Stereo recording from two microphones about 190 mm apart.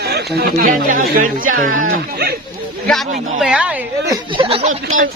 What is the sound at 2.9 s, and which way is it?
Speech, centre (ahead or behind).